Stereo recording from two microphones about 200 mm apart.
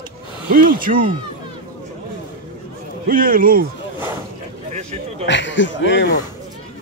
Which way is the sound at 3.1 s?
45° right (ahead or behind).